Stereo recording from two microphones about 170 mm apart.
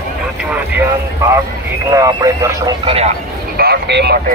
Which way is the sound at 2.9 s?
35° right (ahead or behind).